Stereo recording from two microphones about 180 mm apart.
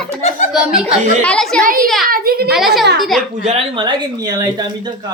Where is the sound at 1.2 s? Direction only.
5° left (ahead or behind).